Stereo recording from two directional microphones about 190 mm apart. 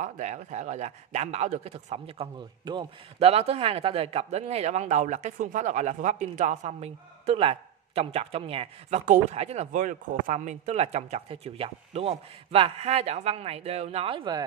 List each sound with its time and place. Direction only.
0.0 s speech: 40° right (ahead or behind)